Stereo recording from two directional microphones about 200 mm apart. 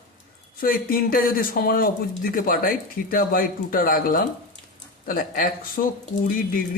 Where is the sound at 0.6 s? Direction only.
45° left (ahead or behind).